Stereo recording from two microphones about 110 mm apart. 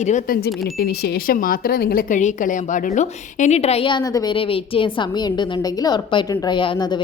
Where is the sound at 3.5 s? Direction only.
70° left (ahead or behind).